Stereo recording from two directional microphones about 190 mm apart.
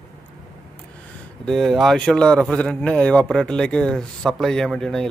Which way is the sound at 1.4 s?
Centre (ahead or behind).